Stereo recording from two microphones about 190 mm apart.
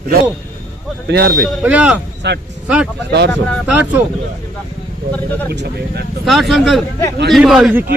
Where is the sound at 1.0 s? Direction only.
65° right (ahead or behind).